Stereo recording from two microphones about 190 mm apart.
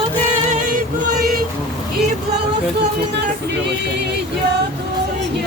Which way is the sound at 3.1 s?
65° right (ahead or behind).